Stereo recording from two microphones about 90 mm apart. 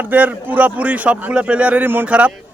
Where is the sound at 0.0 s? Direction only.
20° right (ahead or behind).